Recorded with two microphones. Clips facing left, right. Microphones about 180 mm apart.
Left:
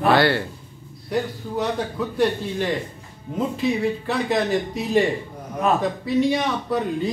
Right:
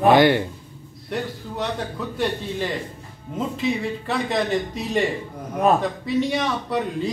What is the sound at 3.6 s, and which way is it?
A man's voice, centre (ahead or behind).